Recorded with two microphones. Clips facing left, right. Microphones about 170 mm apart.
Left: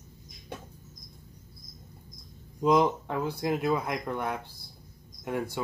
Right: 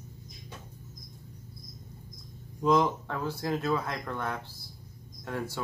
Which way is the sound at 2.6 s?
15° left (ahead or behind).